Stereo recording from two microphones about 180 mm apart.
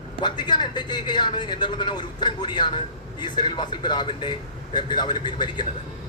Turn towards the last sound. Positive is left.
turn(degrees=25)  # may be behind; listen again after turning